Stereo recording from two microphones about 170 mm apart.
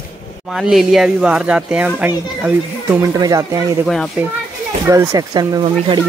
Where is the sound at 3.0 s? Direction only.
20° right (ahead or behind).